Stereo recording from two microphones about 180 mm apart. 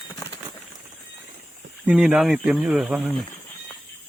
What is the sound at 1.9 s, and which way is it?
Speech, 5° right (ahead or behind).